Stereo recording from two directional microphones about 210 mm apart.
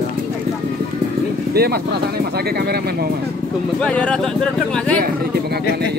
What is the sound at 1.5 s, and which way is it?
Speech, 50° right (ahead or behind).